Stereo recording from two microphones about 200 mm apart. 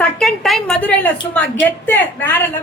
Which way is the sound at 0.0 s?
Centre (ahead or behind).